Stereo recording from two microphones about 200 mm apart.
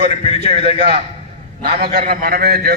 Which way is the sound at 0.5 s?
30° right (ahead or behind).